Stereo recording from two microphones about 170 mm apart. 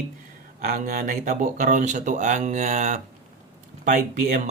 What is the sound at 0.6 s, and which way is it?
Speech, 60° right (ahead or behind).